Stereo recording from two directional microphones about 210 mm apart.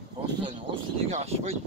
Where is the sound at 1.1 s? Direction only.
30° right (ahead or behind).